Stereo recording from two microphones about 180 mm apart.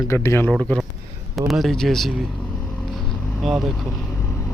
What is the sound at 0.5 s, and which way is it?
Speech, centre (ahead or behind).